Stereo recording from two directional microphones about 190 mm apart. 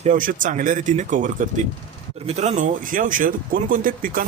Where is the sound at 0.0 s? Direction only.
45° right (ahead or behind).